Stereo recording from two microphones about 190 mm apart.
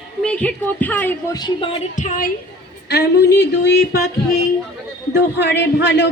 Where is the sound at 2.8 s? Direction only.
60° left (ahead or behind).